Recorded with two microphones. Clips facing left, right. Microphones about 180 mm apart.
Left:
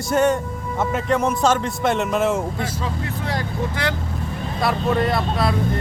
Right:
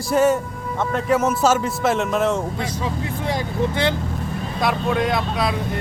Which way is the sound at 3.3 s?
20° right (ahead or behind).